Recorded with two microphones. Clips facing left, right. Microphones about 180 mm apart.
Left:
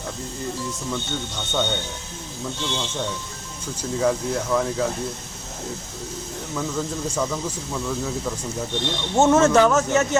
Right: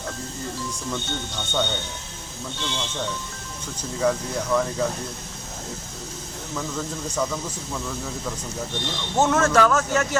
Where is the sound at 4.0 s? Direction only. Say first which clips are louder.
Left 1 dB; 5° left (ahead or behind).